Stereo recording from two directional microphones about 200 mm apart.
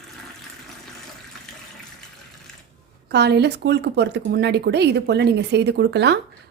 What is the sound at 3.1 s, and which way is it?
Speech, 55° right (ahead or behind).